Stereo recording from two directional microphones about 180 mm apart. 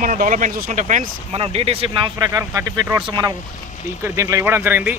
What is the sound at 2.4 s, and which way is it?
Speech, 15° right (ahead or behind).